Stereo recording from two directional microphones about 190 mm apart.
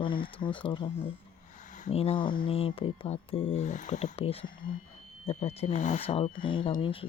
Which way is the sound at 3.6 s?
40° left (ahead or behind).